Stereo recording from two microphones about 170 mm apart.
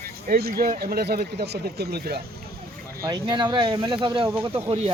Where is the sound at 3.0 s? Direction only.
25° right (ahead or behind).